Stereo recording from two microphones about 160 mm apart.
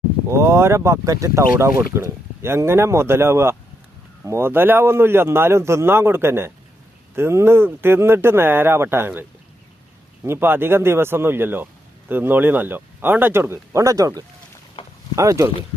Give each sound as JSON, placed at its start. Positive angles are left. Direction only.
{"t": 0.3, "sound": "speech", "side_deg": -20}
{"t": 10.2, "sound": "speech", "side_deg": -15}
{"t": 14.8, "sound": "a sound", "side_deg": 35}
{"t": 15.1, "sound": "speech", "side_deg": -20}